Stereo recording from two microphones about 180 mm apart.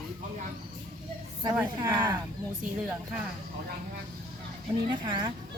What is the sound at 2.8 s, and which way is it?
Speech, 5° right (ahead or behind).